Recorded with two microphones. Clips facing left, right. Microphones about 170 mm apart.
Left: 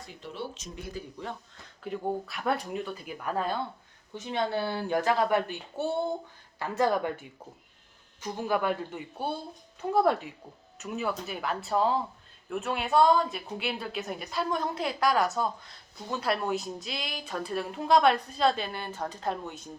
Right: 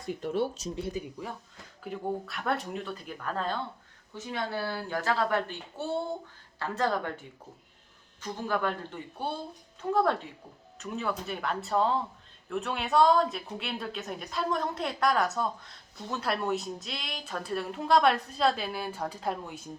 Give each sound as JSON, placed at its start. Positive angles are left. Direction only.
{"t": 0.1, "sound": "speech", "side_deg": -50}
{"t": 1.8, "sound": "speech", "side_deg": 0}
{"t": 4.2, "sound": "speech", "side_deg": 20}
{"t": 8.2, "sound": "speech", "side_deg": 10}